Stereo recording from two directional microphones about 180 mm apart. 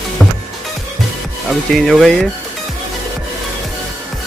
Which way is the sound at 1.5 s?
Centre (ahead or behind).